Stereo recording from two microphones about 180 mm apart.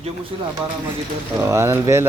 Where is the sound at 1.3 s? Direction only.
15° right (ahead or behind).